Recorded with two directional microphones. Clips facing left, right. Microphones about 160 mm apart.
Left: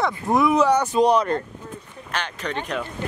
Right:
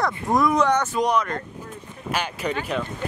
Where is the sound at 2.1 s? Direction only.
10° right (ahead or behind).